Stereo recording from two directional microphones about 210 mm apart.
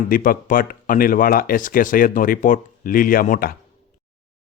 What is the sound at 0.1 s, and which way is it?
Speech, 40° left (ahead or behind).